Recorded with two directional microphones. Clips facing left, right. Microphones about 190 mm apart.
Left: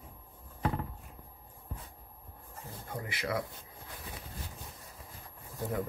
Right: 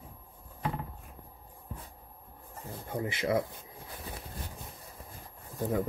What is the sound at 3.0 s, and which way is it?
Speech, 25° right (ahead or behind).